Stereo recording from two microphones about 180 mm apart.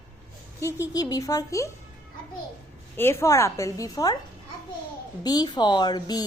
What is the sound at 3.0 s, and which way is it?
A woman's voice, 15° left (ahead or behind).